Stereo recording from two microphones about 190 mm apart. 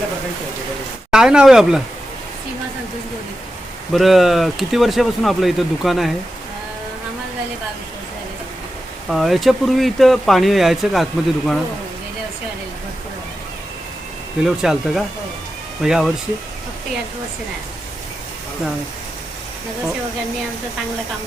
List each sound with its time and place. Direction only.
1.1 s speech: 5° right (ahead or behind)
3.9 s speech: centre (ahead or behind)
9.0 s speech: centre (ahead or behind)
14.4 s speech: centre (ahead or behind)